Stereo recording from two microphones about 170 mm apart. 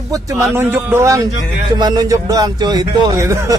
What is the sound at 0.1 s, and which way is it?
A man's voice, 20° right (ahead or behind).